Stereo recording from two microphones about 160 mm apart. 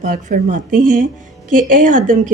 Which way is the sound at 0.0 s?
50° right (ahead or behind).